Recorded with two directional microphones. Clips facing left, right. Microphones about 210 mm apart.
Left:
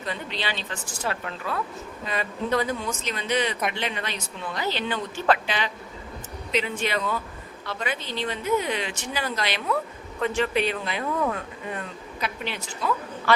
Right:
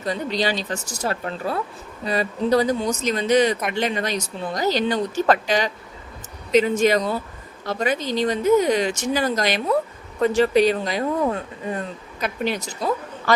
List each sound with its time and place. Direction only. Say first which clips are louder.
0.0 s speech: right 8 dB; 40° right (ahead or behind)